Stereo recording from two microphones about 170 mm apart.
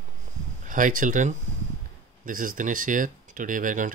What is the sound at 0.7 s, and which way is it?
Speech, 50° right (ahead or behind).